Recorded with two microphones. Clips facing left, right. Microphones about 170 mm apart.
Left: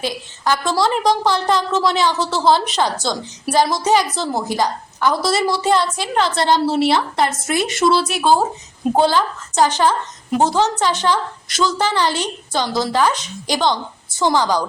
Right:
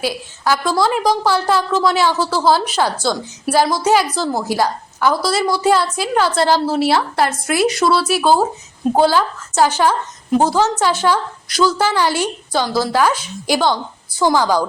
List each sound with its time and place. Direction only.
0.0 s a woman's voice: 5° right (ahead or behind)
13.7 s a woman's voice: 20° left (ahead or behind)
14.3 s a woman's voice: 10° right (ahead or behind)